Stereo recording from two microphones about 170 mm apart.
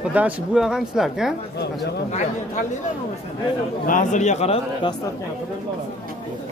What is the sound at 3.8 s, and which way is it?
Speech, 50° left (ahead or behind).